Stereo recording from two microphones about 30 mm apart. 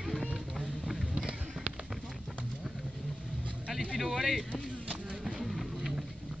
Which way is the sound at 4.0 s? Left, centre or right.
Centre.